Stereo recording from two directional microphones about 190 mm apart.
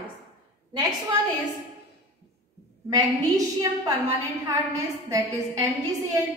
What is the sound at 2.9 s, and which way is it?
A woman's voice, 20° right (ahead or behind).